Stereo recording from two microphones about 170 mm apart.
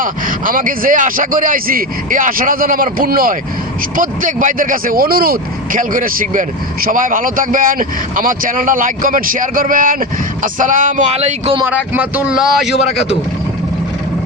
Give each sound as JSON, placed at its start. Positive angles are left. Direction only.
{"t": 0.0, "sound": "speech", "side_deg": -55}
{"t": 11.7, "sound": "speech", "side_deg": -10}